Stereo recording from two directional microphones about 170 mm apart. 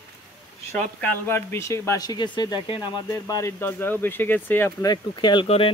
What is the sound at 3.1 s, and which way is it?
Speech, 15° left (ahead or behind).